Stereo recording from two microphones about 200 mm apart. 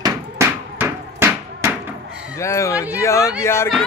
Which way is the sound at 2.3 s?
15° left (ahead or behind).